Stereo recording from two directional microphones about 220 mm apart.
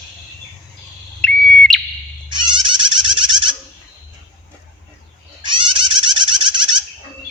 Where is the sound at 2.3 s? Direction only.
20° right (ahead or behind).